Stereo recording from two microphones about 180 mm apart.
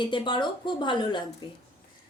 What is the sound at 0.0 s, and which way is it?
A woman's voice, 25° left (ahead or behind).